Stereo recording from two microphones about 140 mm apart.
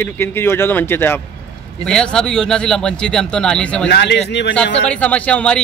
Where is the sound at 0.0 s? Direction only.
15° left (ahead or behind).